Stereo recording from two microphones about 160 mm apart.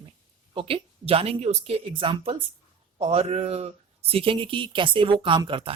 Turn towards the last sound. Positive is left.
turn(degrees=-35)  # may be behind; listen again after turning